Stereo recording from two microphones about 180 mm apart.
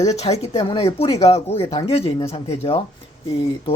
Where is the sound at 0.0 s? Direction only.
35° left (ahead or behind).